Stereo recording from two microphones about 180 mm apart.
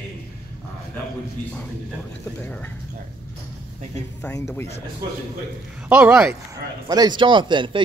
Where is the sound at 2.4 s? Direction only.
10° left (ahead or behind).